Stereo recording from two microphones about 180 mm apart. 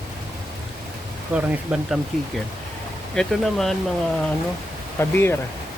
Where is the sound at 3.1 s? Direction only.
5° left (ahead or behind).